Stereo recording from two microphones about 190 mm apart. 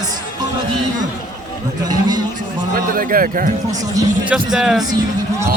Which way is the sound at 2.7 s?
50° right (ahead or behind).